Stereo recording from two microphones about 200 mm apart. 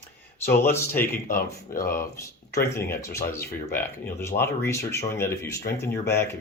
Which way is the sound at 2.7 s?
15° left (ahead or behind).